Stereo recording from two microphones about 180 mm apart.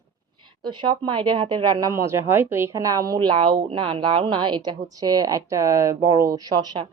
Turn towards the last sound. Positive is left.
turn(degrees=-20)  # may be behind; listen again after turning